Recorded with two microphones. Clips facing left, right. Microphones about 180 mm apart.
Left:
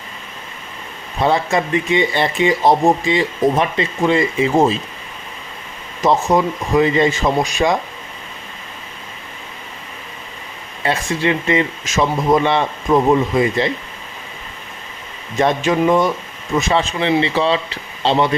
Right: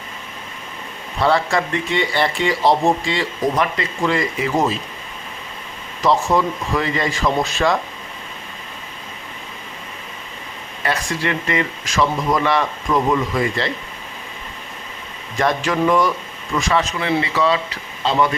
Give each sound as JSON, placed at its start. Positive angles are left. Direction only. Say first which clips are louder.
{"t": 1.2, "sound": "speech", "louder": "left 1 dB", "side_deg": 20}
{"t": 6.0, "sound": "speech", "louder": "left 2 dB", "side_deg": 20}
{"t": 10.8, "sound": "speech", "louder": "left 4 dB", "side_deg": 25}
{"t": 15.4, "sound": "speech", "louder": "left 3 dB", "side_deg": 20}